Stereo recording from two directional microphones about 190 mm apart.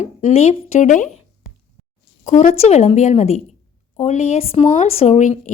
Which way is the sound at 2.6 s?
35° left (ahead or behind).